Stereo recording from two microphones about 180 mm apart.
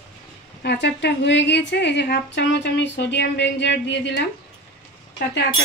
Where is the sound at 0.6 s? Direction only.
70° left (ahead or behind).